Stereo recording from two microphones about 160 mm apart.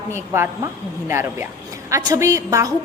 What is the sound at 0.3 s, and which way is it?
A woman's voice, 15° right (ahead or behind).